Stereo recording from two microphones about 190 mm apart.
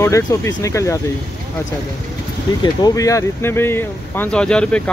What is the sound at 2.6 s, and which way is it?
Speech, 20° left (ahead or behind).